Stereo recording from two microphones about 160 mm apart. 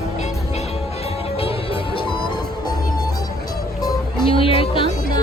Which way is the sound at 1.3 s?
35° left (ahead or behind).